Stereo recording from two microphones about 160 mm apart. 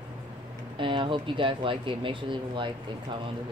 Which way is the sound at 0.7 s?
30° right (ahead or behind).